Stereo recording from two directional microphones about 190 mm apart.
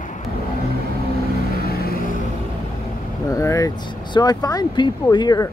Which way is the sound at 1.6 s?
50° left (ahead or behind).